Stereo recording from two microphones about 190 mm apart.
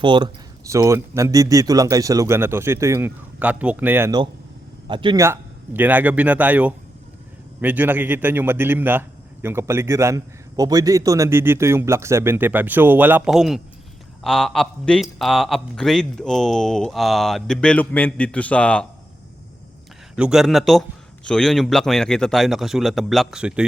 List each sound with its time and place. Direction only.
0.0 s a man's voice: 25° right (ahead or behind)
4.9 s a man's voice: 25° right (ahead or behind); by 18.9 s 5° left (ahead or behind)
20.1 s a man's voice: 5° right (ahead or behind)